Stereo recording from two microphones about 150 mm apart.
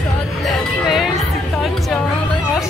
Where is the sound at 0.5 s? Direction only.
Centre (ahead or behind).